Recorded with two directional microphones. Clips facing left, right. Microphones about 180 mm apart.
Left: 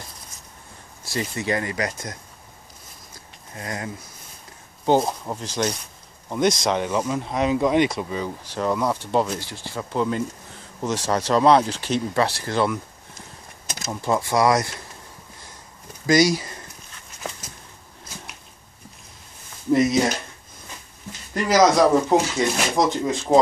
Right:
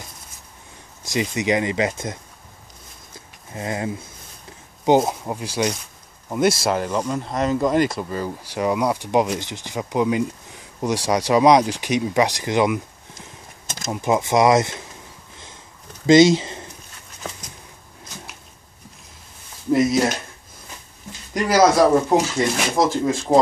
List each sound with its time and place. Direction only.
1.0 s speech: 15° right (ahead or behind)
3.5 s speech: 20° right (ahead or behind); by 8.3 s centre (ahead or behind)
8.5 s speech: 10° right (ahead or behind)
14.0 s speech: 20° right (ahead or behind)
16.1 s speech: 25° right (ahead or behind)
19.7 s speech: centre (ahead or behind)
21.3 s speech: 10° right (ahead or behind)